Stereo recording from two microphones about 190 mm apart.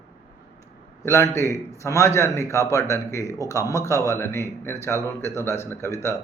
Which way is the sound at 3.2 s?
15° right (ahead or behind).